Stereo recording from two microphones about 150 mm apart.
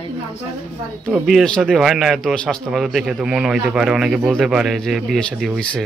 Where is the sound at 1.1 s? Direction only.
Centre (ahead or behind).